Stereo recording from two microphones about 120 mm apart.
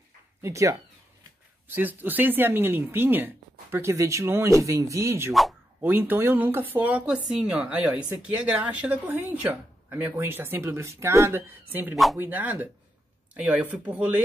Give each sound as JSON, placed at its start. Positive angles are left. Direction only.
{"t": 0.4, "sound": "speech", "side_deg": -25}
{"t": 1.8, "sound": "speech", "side_deg": -15}
{"t": 11.9, "sound": "speech", "side_deg": 0}
{"t": 12.2, "sound": "speech", "side_deg": -15}